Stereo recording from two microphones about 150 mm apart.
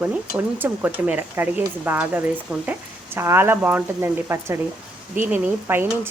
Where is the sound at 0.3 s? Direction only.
10° right (ahead or behind).